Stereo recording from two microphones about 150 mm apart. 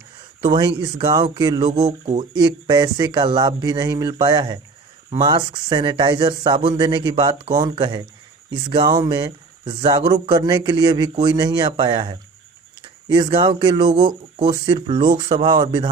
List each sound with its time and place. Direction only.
0.4 s speech: 30° right (ahead or behind)
1.7 s speech: 45° right (ahead or behind)
2.3 s speech: 30° right (ahead or behind)